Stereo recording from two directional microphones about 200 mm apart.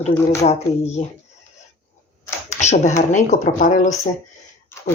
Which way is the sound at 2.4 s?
35° left (ahead or behind).